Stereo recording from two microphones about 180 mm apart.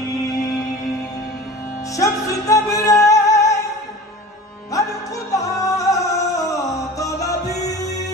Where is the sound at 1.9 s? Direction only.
20° left (ahead or behind).